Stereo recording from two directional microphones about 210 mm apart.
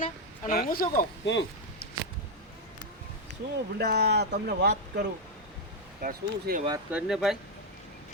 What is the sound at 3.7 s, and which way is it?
Speech, 50° right (ahead or behind).